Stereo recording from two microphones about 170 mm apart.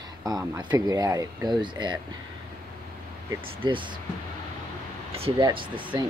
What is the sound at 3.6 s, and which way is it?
Speech, 30° right (ahead or behind).